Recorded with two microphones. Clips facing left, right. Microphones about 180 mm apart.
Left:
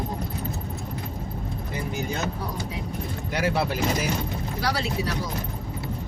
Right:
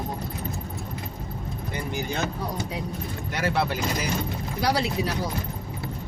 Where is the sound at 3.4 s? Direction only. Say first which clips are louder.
Even; 10° left (ahead or behind).